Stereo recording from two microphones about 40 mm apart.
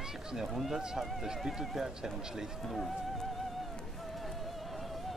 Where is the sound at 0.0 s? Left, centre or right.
Centre.